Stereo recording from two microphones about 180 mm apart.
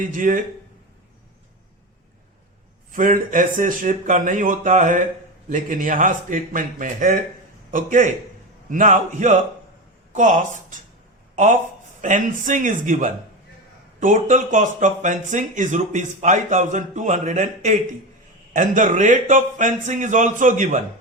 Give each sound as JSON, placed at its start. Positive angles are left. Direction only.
{"t": 0.0, "sound": "speech", "side_deg": -50}
{"t": 2.9, "sound": "speech", "side_deg": -50}
{"t": 12.0, "sound": "speech", "side_deg": -45}